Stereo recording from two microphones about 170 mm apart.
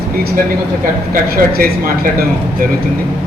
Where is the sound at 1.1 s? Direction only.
60° right (ahead or behind).